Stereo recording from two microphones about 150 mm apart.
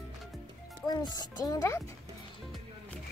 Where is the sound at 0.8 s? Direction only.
25° left (ahead or behind).